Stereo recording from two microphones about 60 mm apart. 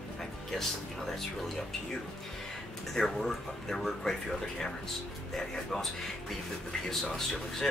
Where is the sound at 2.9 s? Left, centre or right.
Centre.